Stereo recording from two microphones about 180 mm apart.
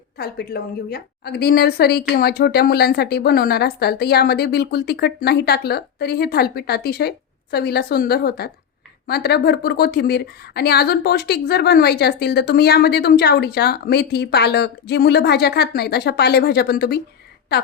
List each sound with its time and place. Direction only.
0.2 s a woman's voice: 60° left (ahead or behind)